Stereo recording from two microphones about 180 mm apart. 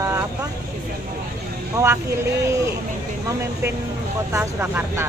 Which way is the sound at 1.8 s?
20° right (ahead or behind).